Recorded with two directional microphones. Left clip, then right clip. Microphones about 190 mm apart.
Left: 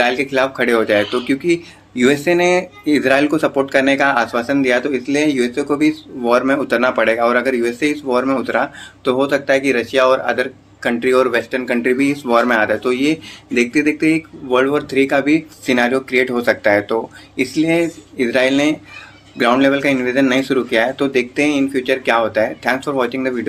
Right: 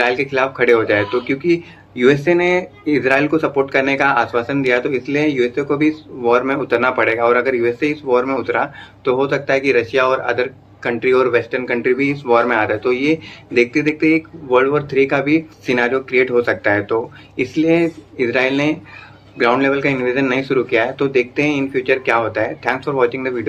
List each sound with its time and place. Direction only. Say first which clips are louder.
0.0 s speech: left 1 dB; 45° left (ahead or behind)